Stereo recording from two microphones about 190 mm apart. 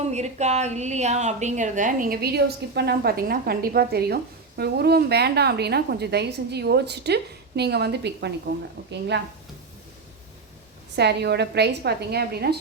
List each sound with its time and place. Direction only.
0.0 s a woman's voice: 35° right (ahead or behind); by 9.2 s 65° right (ahead or behind)
10.9 s a woman's voice: 60° right (ahead or behind)